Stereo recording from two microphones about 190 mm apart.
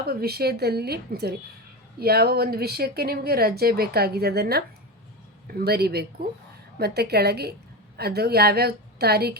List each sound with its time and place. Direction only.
0.0 s speech: 55° right (ahead or behind)